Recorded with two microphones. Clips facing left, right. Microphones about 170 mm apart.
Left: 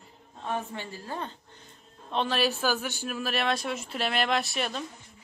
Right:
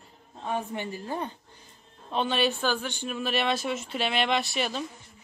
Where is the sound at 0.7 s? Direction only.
15° right (ahead or behind).